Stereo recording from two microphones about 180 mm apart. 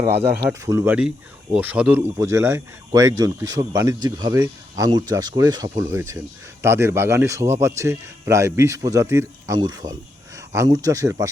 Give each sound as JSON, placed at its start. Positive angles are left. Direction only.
{"t": 0.0, "sound": "speech", "side_deg": -10}